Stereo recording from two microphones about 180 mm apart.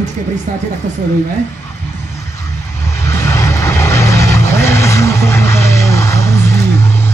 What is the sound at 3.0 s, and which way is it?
Vehicle, 15° left (ahead or behind).